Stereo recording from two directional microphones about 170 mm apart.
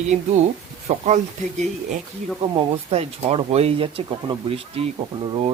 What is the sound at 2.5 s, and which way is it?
Speech, 35° right (ahead or behind).